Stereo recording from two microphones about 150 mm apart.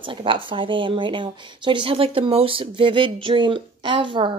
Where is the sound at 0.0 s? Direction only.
35° right (ahead or behind).